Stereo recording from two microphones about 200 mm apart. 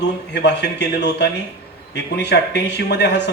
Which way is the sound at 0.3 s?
60° left (ahead or behind).